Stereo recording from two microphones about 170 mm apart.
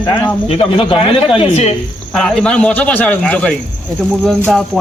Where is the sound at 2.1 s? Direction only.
5° left (ahead or behind).